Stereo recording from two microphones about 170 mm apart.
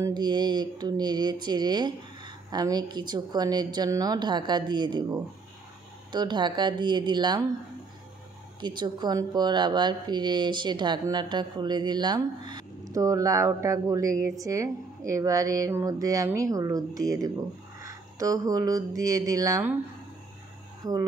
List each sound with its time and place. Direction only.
0.0 s speech: 25° right (ahead or behind)
8.5 s speech: 25° right (ahead or behind)
20.8 s speech: 20° right (ahead or behind)